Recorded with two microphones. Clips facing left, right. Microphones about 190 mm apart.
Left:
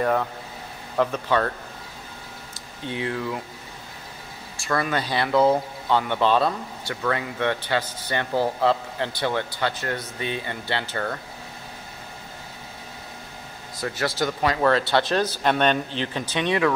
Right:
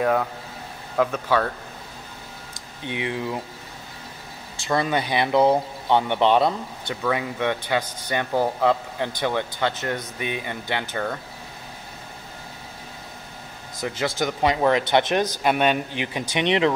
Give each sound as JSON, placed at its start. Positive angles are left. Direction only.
{"t": 0.9, "sound": "speech", "side_deg": -5}
{"t": 2.8, "sound": "speech", "side_deg": -20}
{"t": 4.6, "sound": "speech", "side_deg": -20}
{"t": 13.7, "sound": "speech", "side_deg": -20}